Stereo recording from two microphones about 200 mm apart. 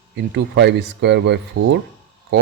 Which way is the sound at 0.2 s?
60° right (ahead or behind).